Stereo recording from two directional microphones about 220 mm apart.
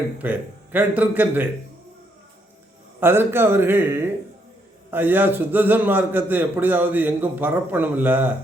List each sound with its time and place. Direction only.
0.2 s a man's voice: 10° right (ahead or behind)
3.0 s a man's voice: 10° right (ahead or behind)